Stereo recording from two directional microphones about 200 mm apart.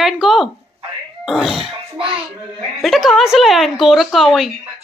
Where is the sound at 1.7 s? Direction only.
25° right (ahead or behind).